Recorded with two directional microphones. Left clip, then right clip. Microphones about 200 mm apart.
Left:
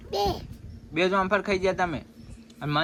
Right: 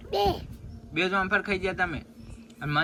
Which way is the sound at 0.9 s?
10° left (ahead or behind).